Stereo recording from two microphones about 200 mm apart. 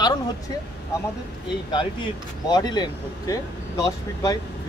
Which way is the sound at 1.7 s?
20° left (ahead or behind).